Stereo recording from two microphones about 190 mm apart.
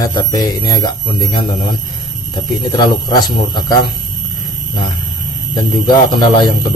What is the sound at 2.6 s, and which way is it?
Speech, 20° left (ahead or behind).